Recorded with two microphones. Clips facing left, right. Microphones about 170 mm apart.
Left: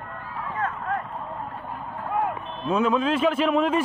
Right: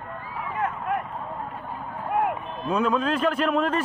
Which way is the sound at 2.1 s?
15° right (ahead or behind).